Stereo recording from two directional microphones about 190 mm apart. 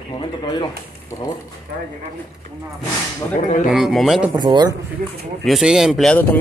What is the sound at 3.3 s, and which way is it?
Speech, 40° left (ahead or behind).